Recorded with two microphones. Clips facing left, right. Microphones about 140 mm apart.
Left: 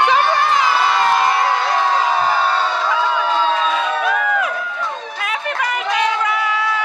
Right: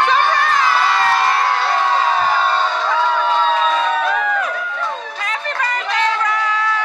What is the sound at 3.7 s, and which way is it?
Crowd, 10° left (ahead or behind).